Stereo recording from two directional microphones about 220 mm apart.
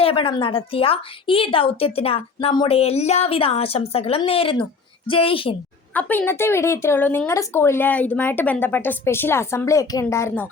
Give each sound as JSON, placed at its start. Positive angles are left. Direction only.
{"t": 0.0, "sound": "a woman's voice", "side_deg": 25}
{"t": 5.9, "sound": "a woman's voice", "side_deg": 5}